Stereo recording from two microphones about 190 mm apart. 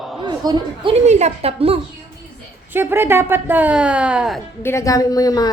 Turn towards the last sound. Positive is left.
turn(degrees=20)  # may be behind; listen again after turning